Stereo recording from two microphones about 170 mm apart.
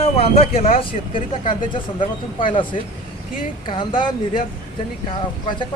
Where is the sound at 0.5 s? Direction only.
55° left (ahead or behind).